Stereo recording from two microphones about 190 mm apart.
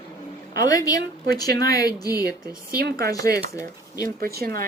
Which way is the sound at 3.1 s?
20° left (ahead or behind).